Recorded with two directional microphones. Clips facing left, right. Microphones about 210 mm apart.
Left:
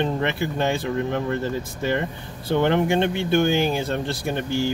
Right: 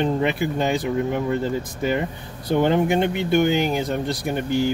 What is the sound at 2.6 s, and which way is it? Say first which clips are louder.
Speech: right 1 dB; 15° right (ahead or behind).